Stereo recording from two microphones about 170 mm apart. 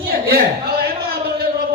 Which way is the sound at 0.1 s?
65° right (ahead or behind).